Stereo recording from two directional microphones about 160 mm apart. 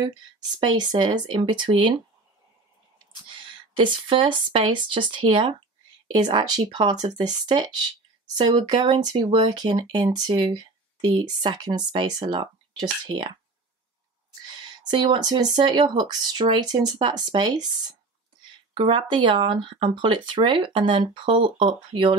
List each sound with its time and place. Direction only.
0.6 s speech: 30° right (ahead or behind)
3.3 s speech: 30° right (ahead or behind)
14.4 s speech: 25° right (ahead or behind)